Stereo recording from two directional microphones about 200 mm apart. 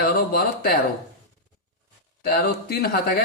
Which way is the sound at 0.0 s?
45° left (ahead or behind).